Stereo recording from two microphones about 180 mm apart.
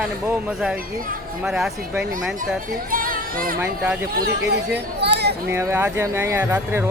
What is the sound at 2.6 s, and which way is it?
Speech, 50° right (ahead or behind).